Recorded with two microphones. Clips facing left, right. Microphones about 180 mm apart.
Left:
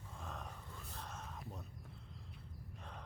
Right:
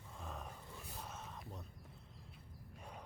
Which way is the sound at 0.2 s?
5° right (ahead or behind).